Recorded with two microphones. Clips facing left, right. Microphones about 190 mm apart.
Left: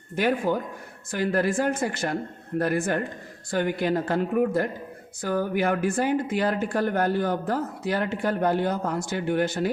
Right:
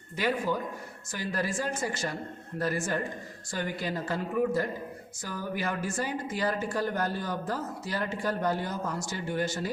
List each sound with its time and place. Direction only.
0.2 s speech: 50° left (ahead or behind)